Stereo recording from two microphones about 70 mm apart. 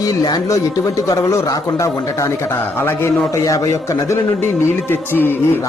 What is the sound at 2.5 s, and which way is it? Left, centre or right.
Speech, left.